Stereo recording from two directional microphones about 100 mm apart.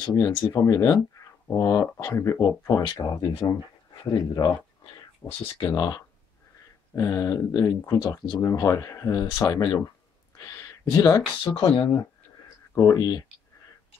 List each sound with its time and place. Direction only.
0.4 s speech: 25° left (ahead or behind)
11.5 s speech: 55° left (ahead or behind)
12.7 s speech: 35° left (ahead or behind)